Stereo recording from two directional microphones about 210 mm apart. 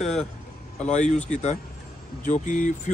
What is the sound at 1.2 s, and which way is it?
Speech, 35° left (ahead or behind).